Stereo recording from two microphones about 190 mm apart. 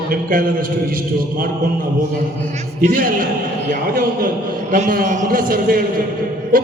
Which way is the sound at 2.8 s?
45° right (ahead or behind).